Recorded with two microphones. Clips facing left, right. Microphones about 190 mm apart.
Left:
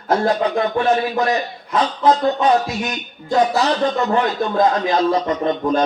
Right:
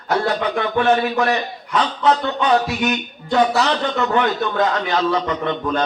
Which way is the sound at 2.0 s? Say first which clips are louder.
Left 3 dB; 35° left (ahead or behind).